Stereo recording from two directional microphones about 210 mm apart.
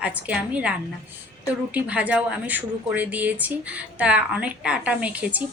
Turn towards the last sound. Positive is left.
turn(degrees=-5)  # may be behind; listen again after turning